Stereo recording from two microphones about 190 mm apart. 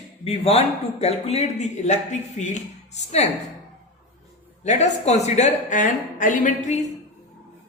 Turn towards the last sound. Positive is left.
turn(degrees=40)  # may be behind; listen again after turning